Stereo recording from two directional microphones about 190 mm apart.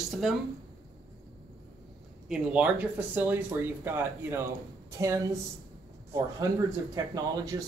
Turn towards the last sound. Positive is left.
turn(degrees=-20)  # may be behind; listen again after turning